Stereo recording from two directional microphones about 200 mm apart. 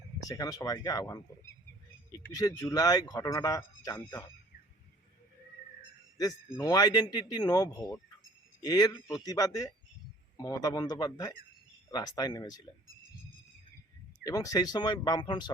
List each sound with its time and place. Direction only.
0.2 s speech: 15° left (ahead or behind)
2.3 s speech: 15° left (ahead or behind)
6.1 s speech: 15° left (ahead or behind)
14.3 s speech: 15° left (ahead or behind)